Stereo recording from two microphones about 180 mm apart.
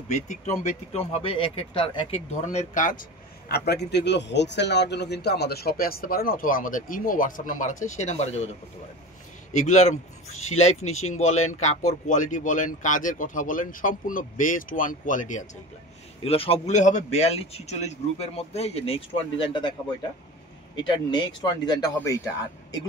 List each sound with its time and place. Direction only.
0.1 s a man's voice: 40° left (ahead or behind)
3.4 s speech: 65° left (ahead or behind); by 8.5 s 40° left (ahead or behind)
9.5 s speech: 40° left (ahead or behind)
16.3 s a man's voice: 30° left (ahead or behind)
20.7 s speech: 25° left (ahead or behind)